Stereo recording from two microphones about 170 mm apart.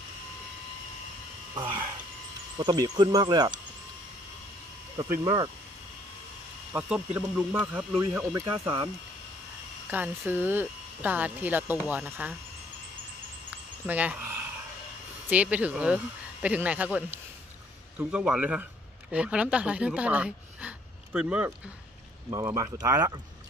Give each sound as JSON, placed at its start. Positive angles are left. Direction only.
{"t": 1.5, "sound": "a sound", "side_deg": -25}
{"t": 2.5, "sound": "speech", "side_deg": -25}
{"t": 5.2, "sound": "speech", "side_deg": -25}
{"t": 6.7, "sound": "speech", "side_deg": -10}
{"t": 9.8, "sound": "speech", "side_deg": -10}
{"t": 13.8, "sound": "speech", "side_deg": -10}
{"t": 22.3, "sound": "speech", "side_deg": -20}